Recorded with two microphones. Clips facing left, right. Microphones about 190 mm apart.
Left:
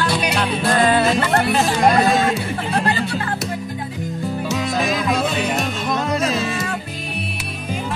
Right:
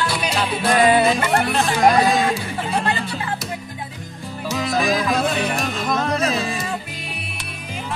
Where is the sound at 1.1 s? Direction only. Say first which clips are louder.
Left 2 dB; centre (ahead or behind).